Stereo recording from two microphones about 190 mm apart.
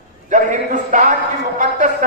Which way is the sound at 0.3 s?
40° right (ahead or behind).